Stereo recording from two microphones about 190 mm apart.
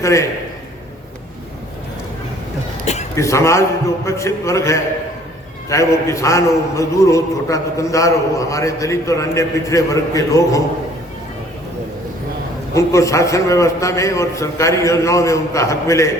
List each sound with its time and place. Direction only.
0.0 s a man's voice: 15° left (ahead or behind)
2.8 s a sound: 35° left (ahead or behind)
3.2 s a man's voice: 15° left (ahead or behind)
12.7 s a man's voice: 15° left (ahead or behind)